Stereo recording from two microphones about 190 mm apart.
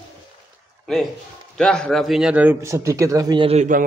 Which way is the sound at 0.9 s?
Centre (ahead or behind).